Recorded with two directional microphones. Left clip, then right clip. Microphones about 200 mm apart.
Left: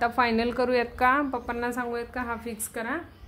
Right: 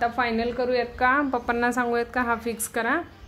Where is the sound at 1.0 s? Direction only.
5° left (ahead or behind).